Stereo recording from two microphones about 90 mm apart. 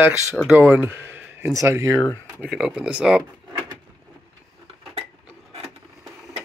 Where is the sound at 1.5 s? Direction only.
30° right (ahead or behind).